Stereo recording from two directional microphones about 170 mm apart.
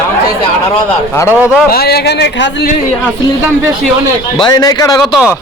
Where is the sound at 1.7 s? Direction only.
65° left (ahead or behind); by 2.7 s 90° left.